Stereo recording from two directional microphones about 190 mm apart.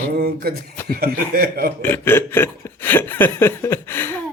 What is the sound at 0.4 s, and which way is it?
Speech, 55° right (ahead or behind).